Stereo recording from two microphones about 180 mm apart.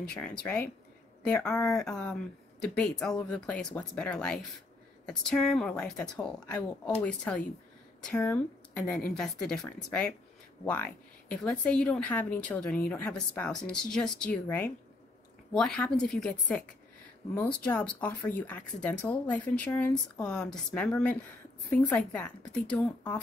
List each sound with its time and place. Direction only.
0.0 s a woman's voice: 5° left (ahead or behind)
17.2 s speech: 35° left (ahead or behind)
17.6 s speech: 5° left (ahead or behind)